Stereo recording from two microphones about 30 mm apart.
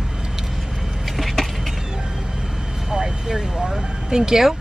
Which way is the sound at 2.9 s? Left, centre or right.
Centre.